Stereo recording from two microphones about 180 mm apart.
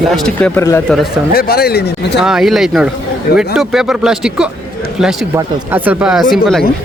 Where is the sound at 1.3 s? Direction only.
60° left (ahead or behind).